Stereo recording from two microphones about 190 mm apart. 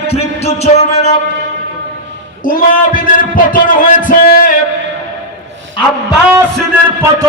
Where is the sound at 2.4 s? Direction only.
45° left (ahead or behind).